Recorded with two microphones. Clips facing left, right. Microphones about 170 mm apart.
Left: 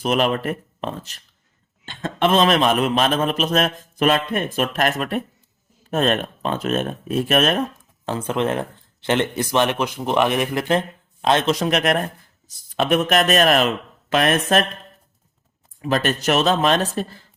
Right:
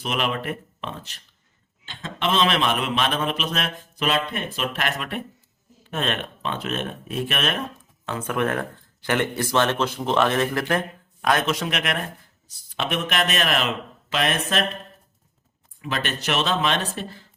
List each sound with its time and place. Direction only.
0.0 s a man's voice: 40° left (ahead or behind)
8.0 s a man's voice: 30° left (ahead or behind); by 14.6 s 50° left (ahead or behind)
15.8 s a man's voice: 40° left (ahead or behind)